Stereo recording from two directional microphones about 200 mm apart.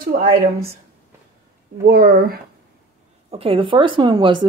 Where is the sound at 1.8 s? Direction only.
50° right (ahead or behind).